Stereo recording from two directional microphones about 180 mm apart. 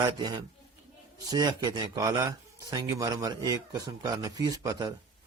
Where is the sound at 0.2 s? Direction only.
25° right (ahead or behind).